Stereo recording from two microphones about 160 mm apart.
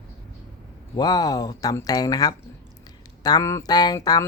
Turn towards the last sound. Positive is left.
turn(degrees=25)  # may be behind; listen again after turning